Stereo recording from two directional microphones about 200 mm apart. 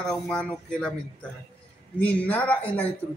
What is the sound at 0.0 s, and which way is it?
Speech, 5° left (ahead or behind).